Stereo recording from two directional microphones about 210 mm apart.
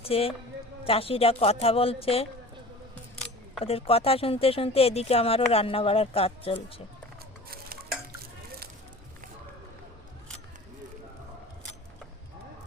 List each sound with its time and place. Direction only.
0.0 s speech: 25° left (ahead or behind)
3.6 s speech: 25° left (ahead or behind)
7.5 s dishes: 45° right (ahead or behind)